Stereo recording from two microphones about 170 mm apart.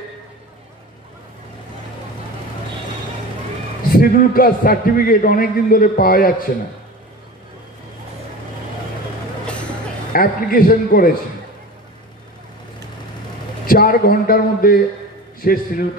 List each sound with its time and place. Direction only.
3.9 s a man's voice: 55° left (ahead or behind)
10.1 s a man's voice: 55° left (ahead or behind)
13.7 s a man's voice: 60° left (ahead or behind)